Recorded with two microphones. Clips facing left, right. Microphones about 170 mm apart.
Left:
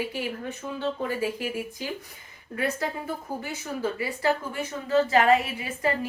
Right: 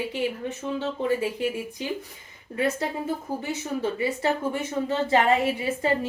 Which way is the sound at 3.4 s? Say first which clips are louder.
Right 2 dB; 25° right (ahead or behind).